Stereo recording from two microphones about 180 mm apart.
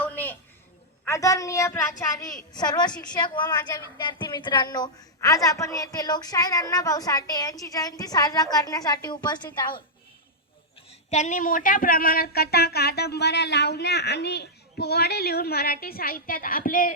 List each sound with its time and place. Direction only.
0.0 s a sound: 10° left (ahead or behind)
1.0 s a woman's voice: 15° left (ahead or behind)
11.1 s speech: 45° left (ahead or behind)